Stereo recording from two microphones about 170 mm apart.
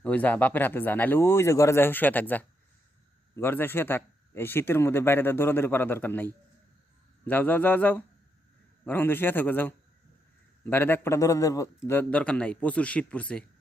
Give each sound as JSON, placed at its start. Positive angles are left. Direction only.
{"t": 0.0, "sound": "speech", "side_deg": 10}